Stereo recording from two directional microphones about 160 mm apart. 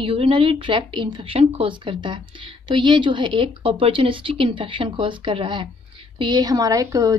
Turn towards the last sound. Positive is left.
turn(degrees=-20)  # may be behind; listen again after turning